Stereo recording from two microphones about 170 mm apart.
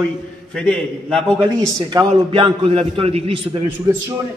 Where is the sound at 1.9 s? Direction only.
25° right (ahead or behind).